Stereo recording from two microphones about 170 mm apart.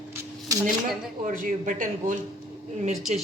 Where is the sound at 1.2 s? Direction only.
50° right (ahead or behind).